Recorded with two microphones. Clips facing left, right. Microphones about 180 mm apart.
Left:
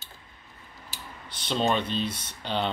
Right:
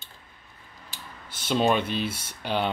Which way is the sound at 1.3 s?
10° right (ahead or behind).